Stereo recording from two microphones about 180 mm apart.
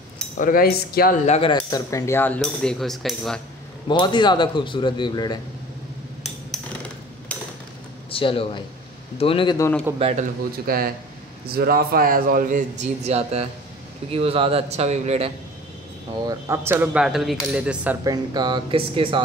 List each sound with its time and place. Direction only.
0.4 s cutlery: 50° left (ahead or behind)
1.2 s speech: 35° left (ahead or behind)
1.5 s speech: 20° left (ahead or behind); by 3.3 s centre (ahead or behind)
3.9 s a man's voice: 25° left (ahead or behind)
8.1 s a man's voice: 30° left (ahead or behind)
9.9 s a man's voice: 35° right (ahead or behind)
10.7 s speech: 55° right (ahead or behind)
12.8 s a man's voice: 35° right (ahead or behind)
16.3 s speech: 15° right (ahead or behind)
18.0 s speech: 20° right (ahead or behind)